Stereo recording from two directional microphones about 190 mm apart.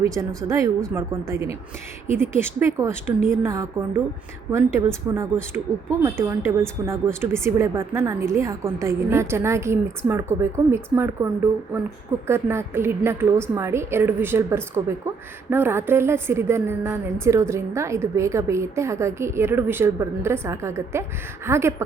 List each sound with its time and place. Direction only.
0.0 s a woman's voice: 15° right (ahead or behind)
12.3 s a woman's voice: 15° right (ahead or behind)